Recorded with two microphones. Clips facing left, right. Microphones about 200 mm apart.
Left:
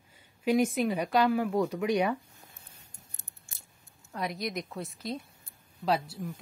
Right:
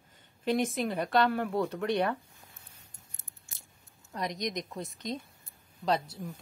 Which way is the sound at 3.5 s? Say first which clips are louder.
Left 1 dB; 55° left (ahead or behind).